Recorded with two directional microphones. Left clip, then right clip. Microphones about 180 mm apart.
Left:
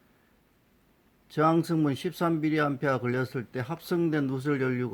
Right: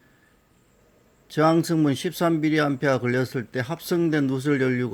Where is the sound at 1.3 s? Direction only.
20° right (ahead or behind).